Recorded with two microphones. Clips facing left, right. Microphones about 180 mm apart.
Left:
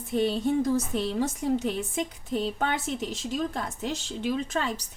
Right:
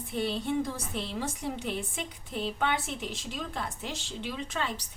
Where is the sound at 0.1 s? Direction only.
45° left (ahead or behind).